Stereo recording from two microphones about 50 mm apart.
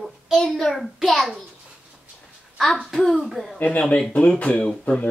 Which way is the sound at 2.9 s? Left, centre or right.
Centre.